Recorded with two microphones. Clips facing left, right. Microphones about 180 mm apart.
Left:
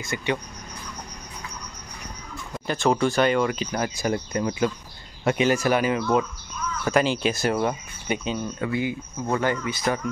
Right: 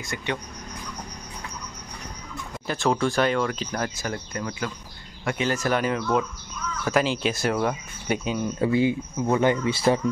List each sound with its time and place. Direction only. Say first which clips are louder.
0.0 s speech: left 3 dB; 5° left (ahead or behind)
2.6 s speech: left 2 dB; centre (ahead or behind)
8.2 s speech: right 1 dB; 10° right (ahead or behind)
8.5 s speech: right 5 dB; 25° right (ahead or behind)